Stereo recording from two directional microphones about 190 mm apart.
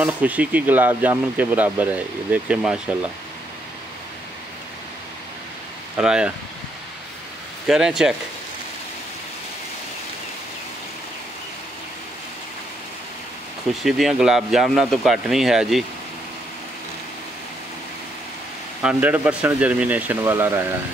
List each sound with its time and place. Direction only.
0.0 s speech: 5° right (ahead or behind)
5.9 s speech: 5° right (ahead or behind)
7.6 s speech: centre (ahead or behind)
13.8 s speech: centre (ahead or behind)
18.8 s speech: 5° right (ahead or behind)